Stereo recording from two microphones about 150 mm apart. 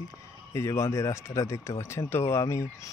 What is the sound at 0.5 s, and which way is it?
Speech, 20° left (ahead or behind).